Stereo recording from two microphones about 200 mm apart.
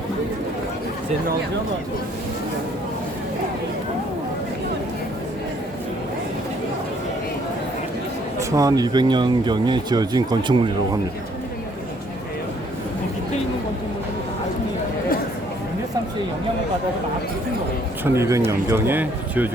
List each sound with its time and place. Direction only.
8.4 s speech: 15° right (ahead or behind)
18.0 s speech: 15° right (ahead or behind)